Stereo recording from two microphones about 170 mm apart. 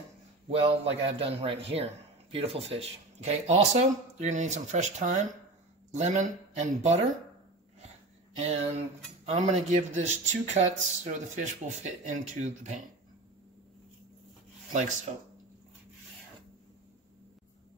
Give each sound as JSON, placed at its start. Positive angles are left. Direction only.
{"t": 0.5, "sound": "a man's voice", "side_deg": -35}
{"t": 9.2, "sound": "speech", "side_deg": -40}
{"t": 14.7, "sound": "speech", "side_deg": -45}